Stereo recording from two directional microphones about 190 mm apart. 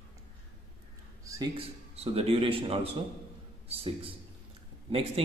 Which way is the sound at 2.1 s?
30° right (ahead or behind).